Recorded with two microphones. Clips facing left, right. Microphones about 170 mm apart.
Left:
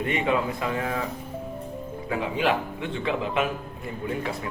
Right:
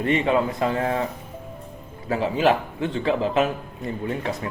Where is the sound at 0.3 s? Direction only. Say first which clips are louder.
Right 4 dB; 30° right (ahead or behind).